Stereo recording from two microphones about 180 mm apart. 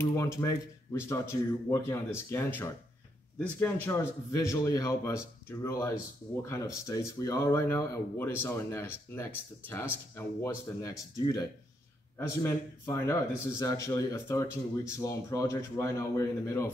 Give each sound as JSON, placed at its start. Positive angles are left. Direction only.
{"t": 0.0, "sound": "speech", "side_deg": 15}